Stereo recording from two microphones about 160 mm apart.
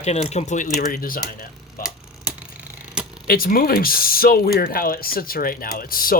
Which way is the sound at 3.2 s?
65° left (ahead or behind).